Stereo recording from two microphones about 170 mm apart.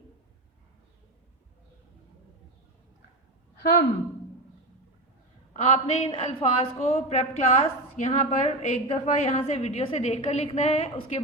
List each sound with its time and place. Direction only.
3.6 s a woman's voice: 65° left (ahead or behind)
5.5 s a woman's voice: 40° left (ahead or behind)